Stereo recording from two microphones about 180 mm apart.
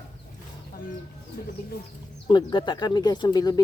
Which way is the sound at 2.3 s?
25° left (ahead or behind).